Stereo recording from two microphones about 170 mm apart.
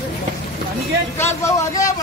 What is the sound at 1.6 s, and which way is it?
Speech, 20° left (ahead or behind).